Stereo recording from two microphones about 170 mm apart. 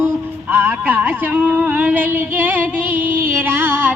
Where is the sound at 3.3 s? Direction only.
10° right (ahead or behind).